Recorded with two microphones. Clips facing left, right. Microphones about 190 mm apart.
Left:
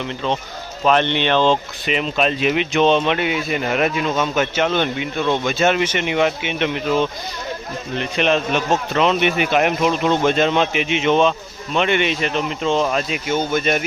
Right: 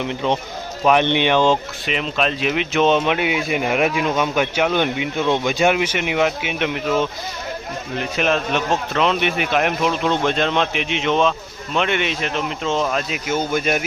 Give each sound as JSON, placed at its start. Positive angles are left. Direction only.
{"t": 0.0, "sound": "speech", "side_deg": -15}
{"t": 1.9, "sound": "speech", "side_deg": 0}